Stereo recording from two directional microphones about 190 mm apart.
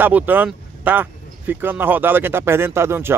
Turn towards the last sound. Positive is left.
turn(degrees=-15)  # may be behind; listen again after turning